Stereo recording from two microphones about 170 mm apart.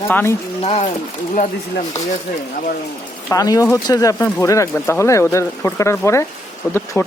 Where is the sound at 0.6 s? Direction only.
40° left (ahead or behind).